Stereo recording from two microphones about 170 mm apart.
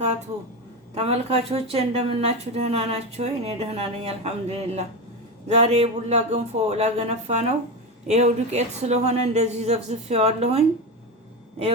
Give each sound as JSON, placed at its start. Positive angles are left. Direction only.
{"t": 0.9, "sound": "speech", "side_deg": -35}